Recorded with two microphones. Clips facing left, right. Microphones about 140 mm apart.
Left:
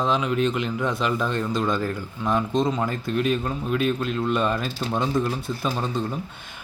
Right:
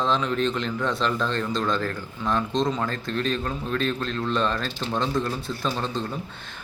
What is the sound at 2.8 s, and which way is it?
A man's voice, 10° left (ahead or behind).